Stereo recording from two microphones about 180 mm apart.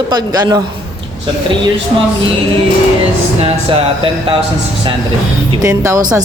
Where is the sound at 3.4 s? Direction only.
30° right (ahead or behind).